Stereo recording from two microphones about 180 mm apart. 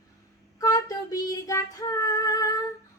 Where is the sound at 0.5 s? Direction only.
20° left (ahead or behind).